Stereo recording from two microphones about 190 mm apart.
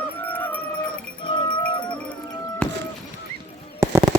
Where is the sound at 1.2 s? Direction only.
25° left (ahead or behind).